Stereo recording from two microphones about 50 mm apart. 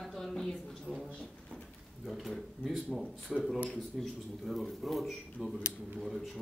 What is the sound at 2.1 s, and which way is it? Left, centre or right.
Speech, centre.